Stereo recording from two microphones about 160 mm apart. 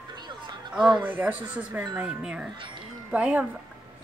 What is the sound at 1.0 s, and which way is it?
Speech, 10° right (ahead or behind).